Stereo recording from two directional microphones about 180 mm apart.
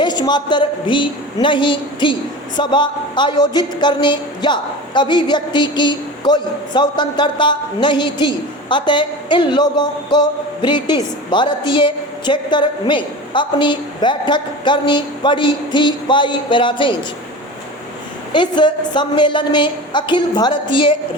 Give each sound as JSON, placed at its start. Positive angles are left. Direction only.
{"t": 0.0, "sound": "speech", "side_deg": 25}
{"t": 18.3, "sound": "speech", "side_deg": 25}